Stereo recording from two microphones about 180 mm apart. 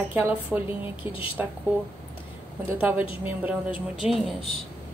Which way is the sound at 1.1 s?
30° left (ahead or behind).